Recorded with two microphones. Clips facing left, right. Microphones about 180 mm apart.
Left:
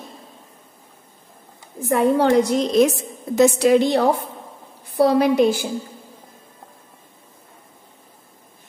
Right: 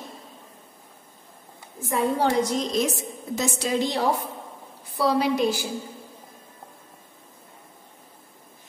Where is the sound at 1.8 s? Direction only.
60° left (ahead or behind).